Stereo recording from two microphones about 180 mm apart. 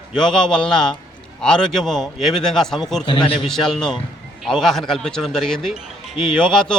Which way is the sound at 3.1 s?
25° left (ahead or behind).